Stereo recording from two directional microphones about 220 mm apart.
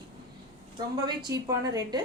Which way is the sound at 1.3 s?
15° right (ahead or behind).